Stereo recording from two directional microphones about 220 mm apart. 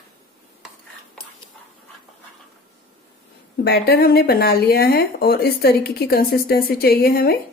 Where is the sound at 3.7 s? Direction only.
45° left (ahead or behind).